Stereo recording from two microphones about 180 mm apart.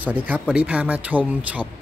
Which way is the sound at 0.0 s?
10° right (ahead or behind).